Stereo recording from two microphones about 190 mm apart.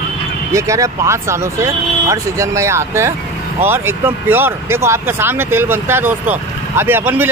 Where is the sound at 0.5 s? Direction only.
15° right (ahead or behind).